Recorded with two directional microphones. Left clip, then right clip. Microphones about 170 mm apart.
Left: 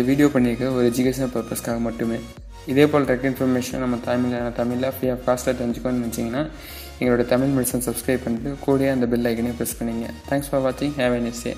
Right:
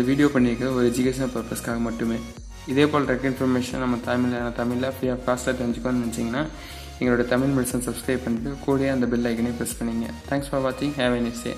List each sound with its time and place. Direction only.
0.2 s a man's voice: 15° left (ahead or behind)